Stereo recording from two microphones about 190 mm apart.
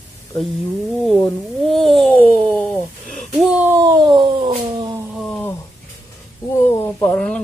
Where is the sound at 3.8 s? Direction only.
20° right (ahead or behind).